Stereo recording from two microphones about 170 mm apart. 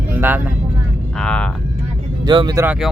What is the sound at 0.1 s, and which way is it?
Vehicle, 10° right (ahead or behind).